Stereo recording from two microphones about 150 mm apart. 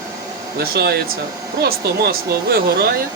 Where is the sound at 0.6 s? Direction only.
90° right.